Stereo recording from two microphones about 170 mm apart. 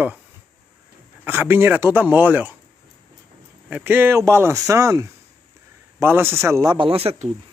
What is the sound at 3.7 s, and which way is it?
A man's voice, 10° right (ahead or behind).